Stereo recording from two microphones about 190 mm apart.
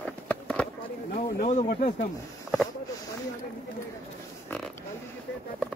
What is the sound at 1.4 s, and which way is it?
Speech, 40° left (ahead or behind).